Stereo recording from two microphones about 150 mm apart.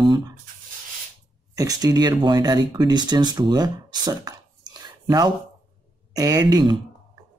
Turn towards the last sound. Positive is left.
turn(degrees=-25)  # may be behind; listen again after turning